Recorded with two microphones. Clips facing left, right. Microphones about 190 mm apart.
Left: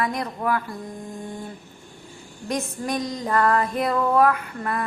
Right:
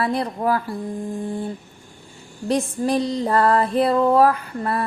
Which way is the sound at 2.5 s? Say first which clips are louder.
Right 6 dB; 30° right (ahead or behind).